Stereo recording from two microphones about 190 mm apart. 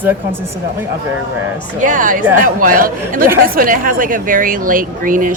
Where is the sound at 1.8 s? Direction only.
45° right (ahead or behind).